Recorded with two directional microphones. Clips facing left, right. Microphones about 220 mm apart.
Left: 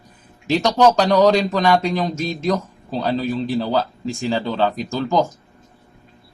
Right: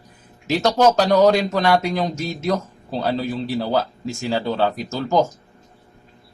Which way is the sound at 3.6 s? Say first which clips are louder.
Left 1 dB; 10° right (ahead or behind).